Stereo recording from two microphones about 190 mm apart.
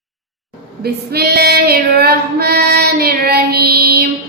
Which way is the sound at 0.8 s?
55° right (ahead or behind).